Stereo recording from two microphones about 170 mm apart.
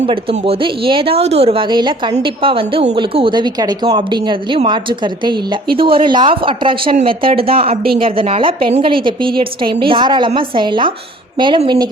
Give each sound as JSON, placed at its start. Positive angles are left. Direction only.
{"t": 0.0, "sound": "a woman's voice", "side_deg": -35}